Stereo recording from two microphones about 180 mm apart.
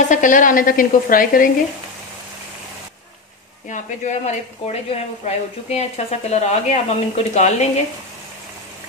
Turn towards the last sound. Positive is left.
turn(degrees=40)  # may be behind; listen again after turning